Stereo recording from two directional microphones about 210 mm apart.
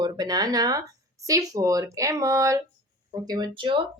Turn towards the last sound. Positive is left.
turn(degrees=-25)  # may be behind; listen again after turning